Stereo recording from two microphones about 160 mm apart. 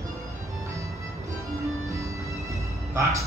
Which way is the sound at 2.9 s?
20° right (ahead or behind).